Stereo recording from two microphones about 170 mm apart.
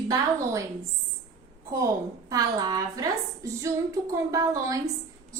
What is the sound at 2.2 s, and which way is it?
A woman's voice, 20° right (ahead or behind).